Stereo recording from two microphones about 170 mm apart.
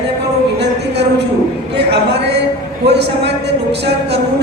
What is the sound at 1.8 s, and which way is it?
Speech, 75° right (ahead or behind).